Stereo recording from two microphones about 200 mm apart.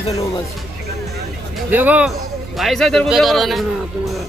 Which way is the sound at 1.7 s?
10° right (ahead or behind).